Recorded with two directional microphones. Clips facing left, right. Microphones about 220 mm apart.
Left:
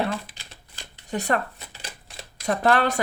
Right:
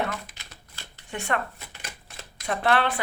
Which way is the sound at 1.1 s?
35° left (ahead or behind).